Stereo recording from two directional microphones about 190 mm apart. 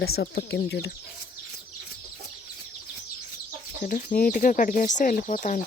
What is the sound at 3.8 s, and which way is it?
Speech, 45° left (ahead or behind).